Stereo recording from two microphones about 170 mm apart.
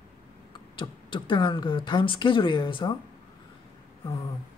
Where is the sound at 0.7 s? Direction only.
30° left (ahead or behind).